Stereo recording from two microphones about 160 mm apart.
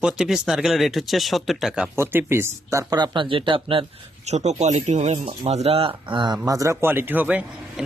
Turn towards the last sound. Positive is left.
turn(degrees=-10)  # may be behind; listen again after turning